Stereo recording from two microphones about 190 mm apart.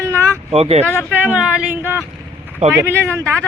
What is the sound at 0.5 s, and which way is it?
Speech, 30° right (ahead or behind).